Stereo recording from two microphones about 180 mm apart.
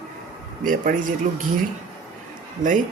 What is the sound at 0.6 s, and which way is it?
Speech, 50° right (ahead or behind).